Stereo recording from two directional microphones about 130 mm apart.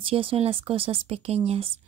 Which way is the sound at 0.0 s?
45° right (ahead or behind).